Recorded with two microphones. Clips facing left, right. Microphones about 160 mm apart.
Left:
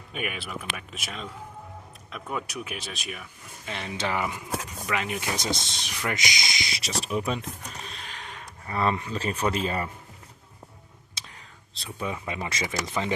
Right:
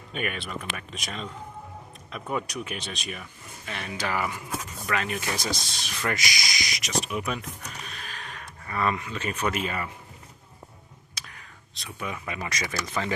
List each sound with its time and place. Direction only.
0.1 s speech: 5° left (ahead or behind)
3.7 s speech: 25° left (ahead or behind)
11.2 s whispering: 25° left (ahead or behind)
11.7 s speech: 30° left (ahead or behind)